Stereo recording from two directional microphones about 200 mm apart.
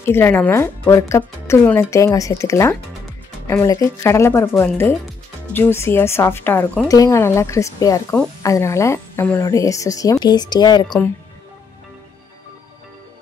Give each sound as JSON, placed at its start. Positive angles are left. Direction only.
{"t": 0.0, "sound": "speech", "side_deg": 10}